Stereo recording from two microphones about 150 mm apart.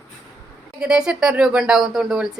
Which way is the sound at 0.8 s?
5° right (ahead or behind).